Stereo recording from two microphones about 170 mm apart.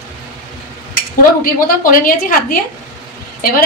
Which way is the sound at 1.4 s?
55° left (ahead or behind).